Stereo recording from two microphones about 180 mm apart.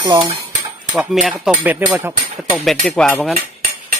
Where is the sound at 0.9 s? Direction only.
5° right (ahead or behind).